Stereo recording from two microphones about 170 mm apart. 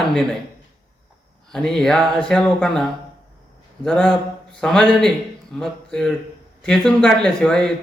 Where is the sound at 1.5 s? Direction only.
5° left (ahead or behind).